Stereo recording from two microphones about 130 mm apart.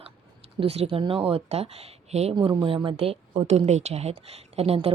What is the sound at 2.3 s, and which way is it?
Speech, 35° right (ahead or behind).